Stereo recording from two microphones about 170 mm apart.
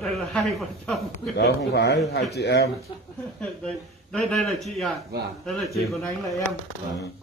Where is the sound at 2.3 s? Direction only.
75° left (ahead or behind).